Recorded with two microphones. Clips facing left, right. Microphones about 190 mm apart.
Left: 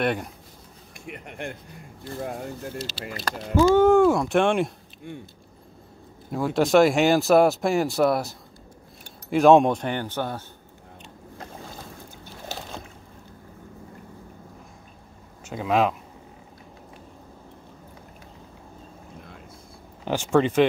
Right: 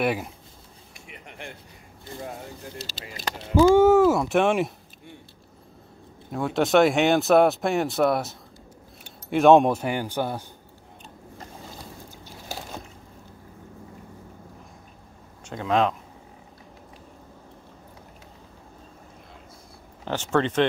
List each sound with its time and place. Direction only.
0.0 s speech: 5° right (ahead or behind)
0.9 s a sound: 55° left (ahead or behind)
3.2 s speech: 10° right (ahead or behind)
6.3 s speech: centre (ahead or behind)
12.4 s boat: 10° right (ahead or behind)
15.4 s speech: 5° left (ahead or behind)
20.1 s speech: 10° left (ahead or behind)